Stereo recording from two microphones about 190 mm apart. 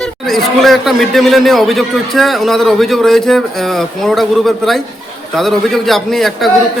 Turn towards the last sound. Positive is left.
turn(degrees=0)  # may be behind; listen again after turning